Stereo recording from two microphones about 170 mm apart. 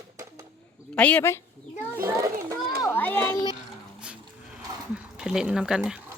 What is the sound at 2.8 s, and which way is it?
Speech, 10° left (ahead or behind).